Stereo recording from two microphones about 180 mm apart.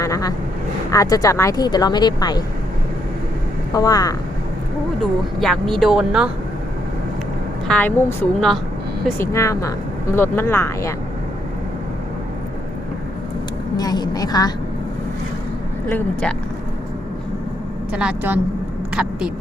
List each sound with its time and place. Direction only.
0.0 s vehicle: 20° left (ahead or behind)
0.9 s speech: 20° left (ahead or behind)
3.7 s speech: 20° left (ahead or behind)
5.4 s speech: centre (ahead or behind)
7.7 s speech: 10° left (ahead or behind)
13.7 s speech: 20° left (ahead or behind)
15.9 s speech: 10° left (ahead or behind)
17.9 s a woman's voice: 10° right (ahead or behind)